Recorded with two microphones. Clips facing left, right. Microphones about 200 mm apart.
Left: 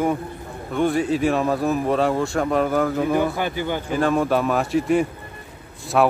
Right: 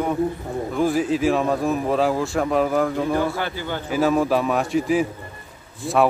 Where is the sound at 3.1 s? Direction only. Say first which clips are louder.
Left 1 dB; 15° left (ahead or behind).